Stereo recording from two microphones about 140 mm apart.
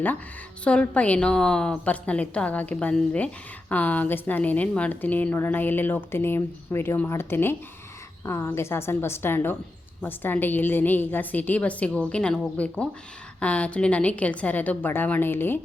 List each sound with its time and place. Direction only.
0.6 s a woman's voice: 10° left (ahead or behind)